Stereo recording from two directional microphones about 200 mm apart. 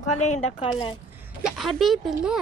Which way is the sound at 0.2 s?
30° left (ahead or behind).